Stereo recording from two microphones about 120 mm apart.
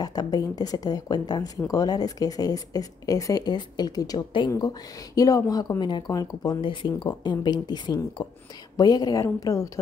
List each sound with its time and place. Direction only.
0.0 s speech: 30° left (ahead or behind)
6.6 s speech: 45° left (ahead or behind)